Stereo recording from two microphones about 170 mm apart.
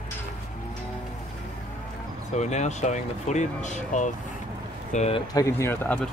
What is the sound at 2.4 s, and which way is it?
Speech, 40° left (ahead or behind).